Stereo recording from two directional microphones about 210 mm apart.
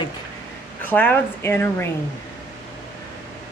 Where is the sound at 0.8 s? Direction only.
10° left (ahead or behind).